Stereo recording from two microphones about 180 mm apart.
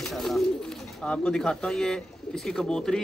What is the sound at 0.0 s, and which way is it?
Speech, centre (ahead or behind).